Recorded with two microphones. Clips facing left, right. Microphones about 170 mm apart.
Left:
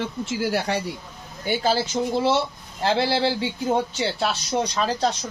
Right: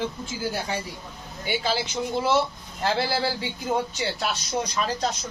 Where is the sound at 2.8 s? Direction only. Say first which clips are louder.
Left 4 dB; 25° left (ahead or behind).